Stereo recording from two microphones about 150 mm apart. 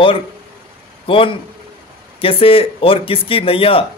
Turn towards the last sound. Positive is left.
turn(degrees=40)  # may be behind; listen again after turning